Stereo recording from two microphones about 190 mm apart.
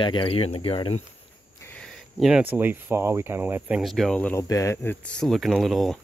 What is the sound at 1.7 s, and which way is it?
Speech, 5° right (ahead or behind).